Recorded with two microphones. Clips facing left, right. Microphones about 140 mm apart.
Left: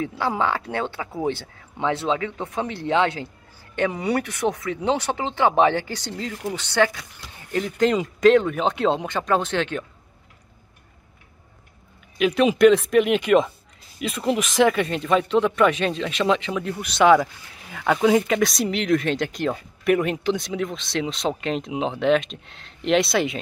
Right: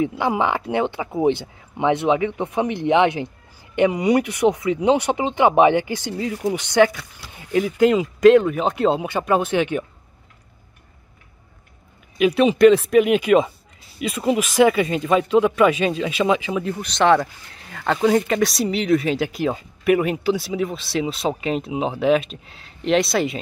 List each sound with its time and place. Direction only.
0.0 s speech: 15° right (ahead or behind)
12.2 s speech: 5° right (ahead or behind)